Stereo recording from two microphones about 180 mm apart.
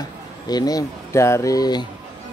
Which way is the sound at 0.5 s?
20° left (ahead or behind).